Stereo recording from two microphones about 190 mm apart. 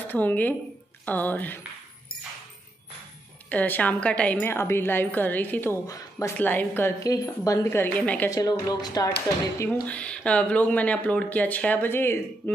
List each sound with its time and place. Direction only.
0.0 s a woman's voice: 10° left (ahead or behind)
3.4 s a woman's voice: 10° left (ahead or behind)
8.3 s speech: 20° left (ahead or behind)
9.6 s a woman's voice: 10° left (ahead or behind)